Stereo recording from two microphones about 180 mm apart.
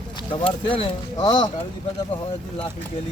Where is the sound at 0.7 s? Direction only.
30° left (ahead or behind).